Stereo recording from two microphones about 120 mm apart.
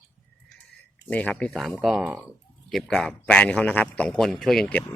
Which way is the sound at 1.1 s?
10° left (ahead or behind).